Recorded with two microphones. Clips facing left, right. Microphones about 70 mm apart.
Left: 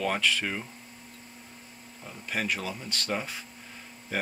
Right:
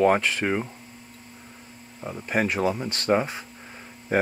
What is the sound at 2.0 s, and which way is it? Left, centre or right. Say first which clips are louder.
Speech: right 8 dB; right.